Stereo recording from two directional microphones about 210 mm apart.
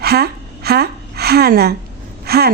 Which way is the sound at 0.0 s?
50° right (ahead or behind).